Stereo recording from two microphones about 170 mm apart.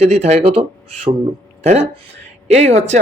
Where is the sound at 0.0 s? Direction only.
40° right (ahead or behind).